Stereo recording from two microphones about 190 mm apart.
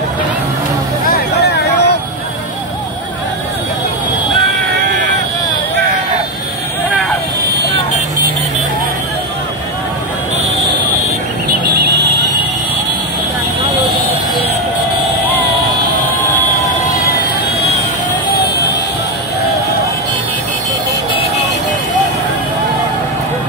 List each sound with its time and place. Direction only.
1.5 s vehicle: 60° left (ahead or behind)